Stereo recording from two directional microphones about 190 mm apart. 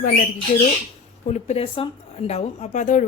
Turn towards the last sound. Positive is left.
turn(degrees=40)  # may be behind; listen again after turning